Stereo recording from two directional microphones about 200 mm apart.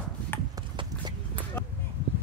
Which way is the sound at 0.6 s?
25° right (ahead or behind).